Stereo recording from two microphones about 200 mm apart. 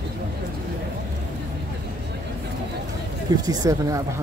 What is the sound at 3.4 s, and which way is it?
Speech, 20° right (ahead or behind).